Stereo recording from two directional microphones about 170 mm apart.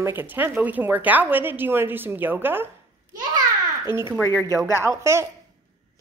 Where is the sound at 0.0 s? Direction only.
10° right (ahead or behind).